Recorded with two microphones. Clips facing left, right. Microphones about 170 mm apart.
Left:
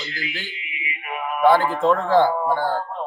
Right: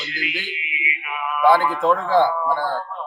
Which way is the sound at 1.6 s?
25° left (ahead or behind).